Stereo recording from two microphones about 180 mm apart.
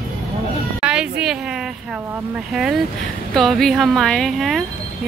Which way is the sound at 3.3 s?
Centre (ahead or behind).